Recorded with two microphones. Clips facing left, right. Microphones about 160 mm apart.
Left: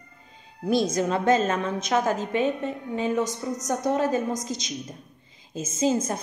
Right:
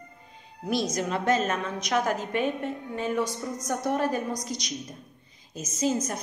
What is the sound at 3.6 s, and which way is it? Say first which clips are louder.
Speech: left 2 dB; 45° left (ahead or behind).